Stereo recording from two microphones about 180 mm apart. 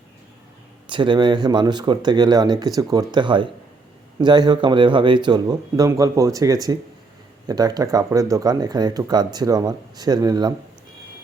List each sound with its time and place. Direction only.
0.9 s speech: 25° right (ahead or behind)